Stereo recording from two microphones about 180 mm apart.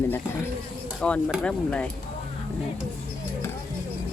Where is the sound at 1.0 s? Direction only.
5° left (ahead or behind).